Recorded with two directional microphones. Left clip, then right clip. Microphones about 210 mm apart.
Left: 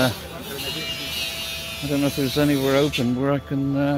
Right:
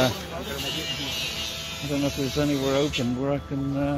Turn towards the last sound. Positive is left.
turn(degrees=35)  # may be behind; listen again after turning